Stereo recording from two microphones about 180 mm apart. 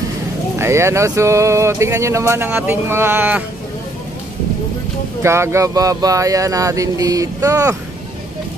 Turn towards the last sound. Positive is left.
turn(degrees=-15)  # may be behind; listen again after turning